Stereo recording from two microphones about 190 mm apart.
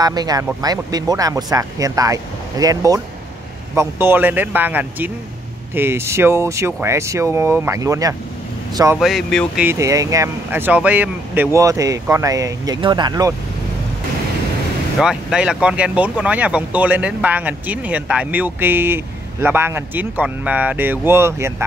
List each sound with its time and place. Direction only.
0.0 s speech: 20° right (ahead or behind)
4.0 s speech: 10° right (ahead or behind)
8.9 s speech: centre (ahead or behind)
9.7 s speech: 15° right (ahead or behind)
15.0 s speech: centre (ahead or behind)